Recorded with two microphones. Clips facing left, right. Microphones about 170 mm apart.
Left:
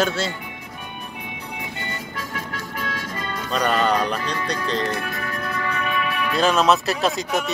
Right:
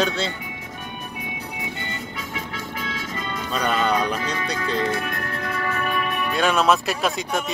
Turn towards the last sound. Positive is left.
turn(degrees=0)  # may be behind; listen again after turning